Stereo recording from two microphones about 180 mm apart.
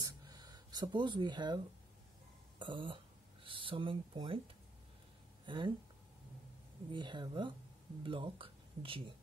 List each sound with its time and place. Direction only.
0.0 s a sound: 20° right (ahead or behind)
2.6 s speech: 25° right (ahead or behind)
5.5 s speech: 25° right (ahead or behind)
6.9 s speech: 25° right (ahead or behind)